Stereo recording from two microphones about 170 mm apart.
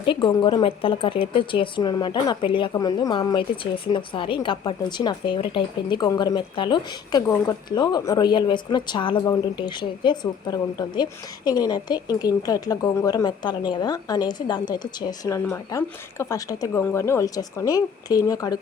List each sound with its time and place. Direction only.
0.0 s speech: 30° left (ahead or behind)